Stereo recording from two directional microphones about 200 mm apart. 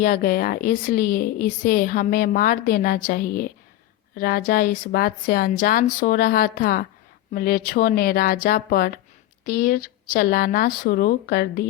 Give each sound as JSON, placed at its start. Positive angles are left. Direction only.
{"t": 0.0, "sound": "speech", "side_deg": 45}